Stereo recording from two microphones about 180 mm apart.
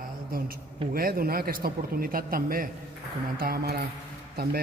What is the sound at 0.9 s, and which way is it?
Speech, 55° right (ahead or behind).